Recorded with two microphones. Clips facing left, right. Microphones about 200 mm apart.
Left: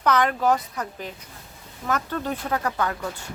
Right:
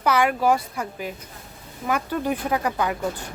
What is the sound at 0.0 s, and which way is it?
Speech, 10° right (ahead or behind).